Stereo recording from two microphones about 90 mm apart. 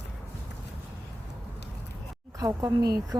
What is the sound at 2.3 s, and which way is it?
Speech, 40° right (ahead or behind).